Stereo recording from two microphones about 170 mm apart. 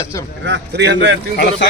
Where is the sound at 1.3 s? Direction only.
70° left (ahead or behind).